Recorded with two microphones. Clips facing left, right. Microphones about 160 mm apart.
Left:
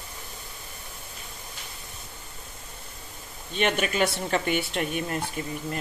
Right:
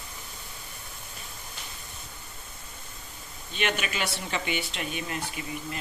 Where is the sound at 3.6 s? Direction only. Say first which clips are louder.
Left 6 dB; 45° left (ahead or behind).